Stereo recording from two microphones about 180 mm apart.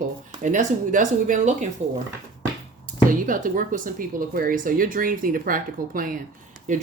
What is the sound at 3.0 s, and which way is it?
Speech, 50° right (ahead or behind).